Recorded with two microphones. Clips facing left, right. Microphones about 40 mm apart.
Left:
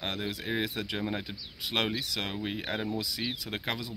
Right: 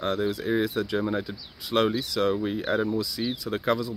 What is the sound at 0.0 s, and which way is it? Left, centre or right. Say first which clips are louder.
Speech: right 8 dB; left.